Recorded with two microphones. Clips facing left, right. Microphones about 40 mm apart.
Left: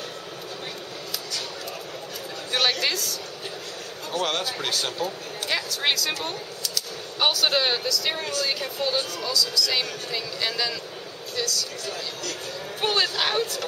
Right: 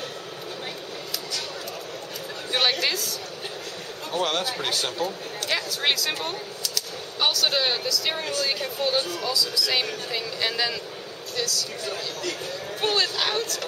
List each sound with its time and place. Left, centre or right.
2.5 s a sound: centre
4.1 s speech: centre
6.2 s a sound: centre
7.2 s speech: centre
11.8 s speech: right
12.8 s speech: centre